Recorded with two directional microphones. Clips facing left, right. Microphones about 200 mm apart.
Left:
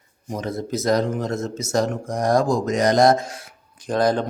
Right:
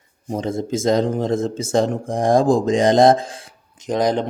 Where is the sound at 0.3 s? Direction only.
30° right (ahead or behind).